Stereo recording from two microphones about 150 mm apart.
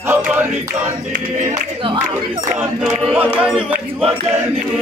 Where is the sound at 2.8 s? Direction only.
10° right (ahead or behind).